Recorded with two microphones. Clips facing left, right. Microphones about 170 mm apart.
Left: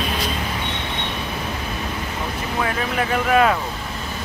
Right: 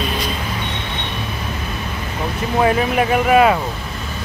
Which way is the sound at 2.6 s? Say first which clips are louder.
Right 8 dB; 20° right (ahead or behind).